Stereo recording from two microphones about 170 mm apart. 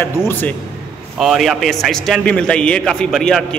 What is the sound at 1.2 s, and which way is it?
A man's voice, centre (ahead or behind).